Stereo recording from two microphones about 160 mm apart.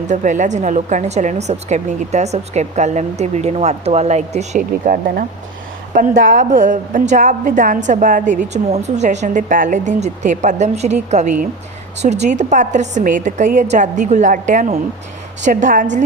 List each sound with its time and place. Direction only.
0.1 s a woman's voice: 50° right (ahead or behind)